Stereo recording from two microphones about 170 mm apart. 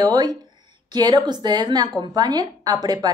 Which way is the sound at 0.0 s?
25° right (ahead or behind).